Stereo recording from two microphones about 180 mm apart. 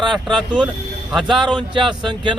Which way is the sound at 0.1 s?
Centre (ahead or behind).